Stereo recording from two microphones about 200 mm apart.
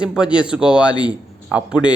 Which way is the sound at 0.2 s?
5° right (ahead or behind).